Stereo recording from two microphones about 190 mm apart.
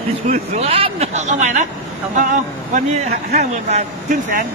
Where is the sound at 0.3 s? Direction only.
35° right (ahead or behind).